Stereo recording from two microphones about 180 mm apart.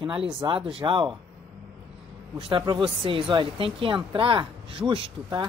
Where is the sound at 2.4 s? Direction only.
25° right (ahead or behind).